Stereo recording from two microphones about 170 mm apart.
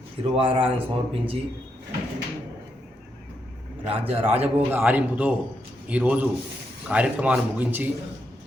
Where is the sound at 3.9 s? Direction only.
35° right (ahead or behind).